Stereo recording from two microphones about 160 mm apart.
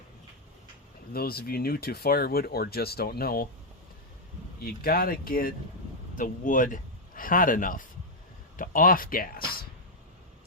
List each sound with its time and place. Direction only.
1.1 s speech: 70° left (ahead or behind)
4.6 s speech: 65° left (ahead or behind)